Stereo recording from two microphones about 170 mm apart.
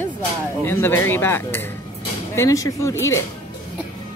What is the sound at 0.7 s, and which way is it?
Speech, 15° left (ahead or behind).